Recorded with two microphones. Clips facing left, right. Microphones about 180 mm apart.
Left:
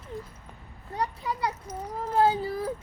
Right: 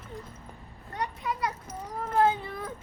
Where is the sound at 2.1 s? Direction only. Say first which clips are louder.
Left 2 dB; 35° left (ahead or behind).